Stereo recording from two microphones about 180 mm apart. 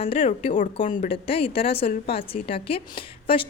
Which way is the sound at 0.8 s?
45° left (ahead or behind).